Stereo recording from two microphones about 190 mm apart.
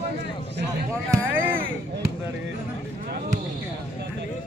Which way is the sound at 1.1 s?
10° right (ahead or behind).